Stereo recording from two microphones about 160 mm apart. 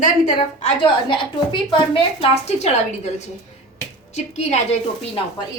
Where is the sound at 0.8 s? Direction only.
30° left (ahead or behind).